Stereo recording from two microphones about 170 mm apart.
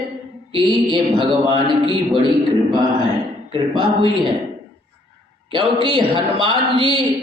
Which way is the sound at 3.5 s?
30° right (ahead or behind).